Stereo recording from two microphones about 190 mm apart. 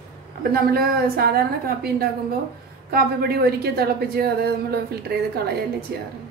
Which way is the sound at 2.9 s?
55° right (ahead or behind).